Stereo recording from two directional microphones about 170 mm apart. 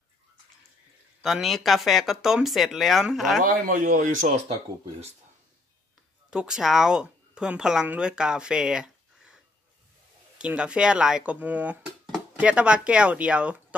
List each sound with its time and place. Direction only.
1.2 s speech: centre (ahead or behind)
3.4 s a man's voice: 55° right (ahead or behind)
6.3 s speech: 5° right (ahead or behind)
10.4 s speech: 5° right (ahead or behind)